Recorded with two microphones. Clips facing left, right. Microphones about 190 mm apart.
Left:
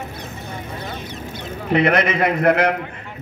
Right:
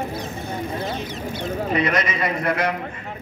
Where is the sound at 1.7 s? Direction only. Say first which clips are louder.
Left 7 dB; 60° left (ahead or behind).